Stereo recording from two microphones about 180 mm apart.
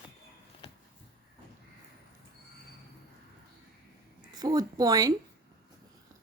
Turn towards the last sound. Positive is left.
turn(degrees=-20)  # may be behind; listen again after turning